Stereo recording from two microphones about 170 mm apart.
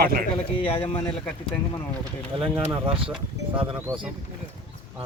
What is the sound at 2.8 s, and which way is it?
Speech, 30° right (ahead or behind).